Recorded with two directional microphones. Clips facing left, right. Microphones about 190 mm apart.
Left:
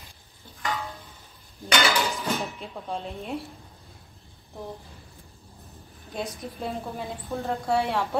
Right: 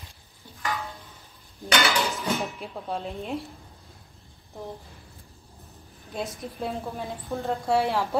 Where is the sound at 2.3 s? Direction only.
Centre (ahead or behind).